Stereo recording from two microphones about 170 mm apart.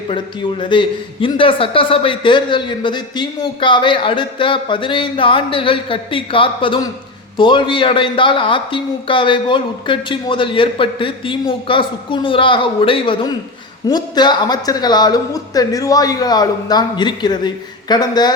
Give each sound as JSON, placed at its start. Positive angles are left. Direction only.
{"t": 0.6, "sound": "a man's voice", "side_deg": 30}